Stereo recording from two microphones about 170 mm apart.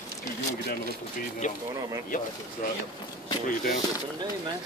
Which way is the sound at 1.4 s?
45° left (ahead or behind).